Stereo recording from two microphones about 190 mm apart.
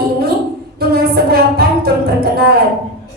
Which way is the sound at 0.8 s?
55° right (ahead or behind).